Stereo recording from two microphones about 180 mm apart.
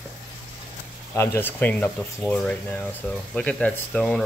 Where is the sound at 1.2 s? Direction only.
15° left (ahead or behind).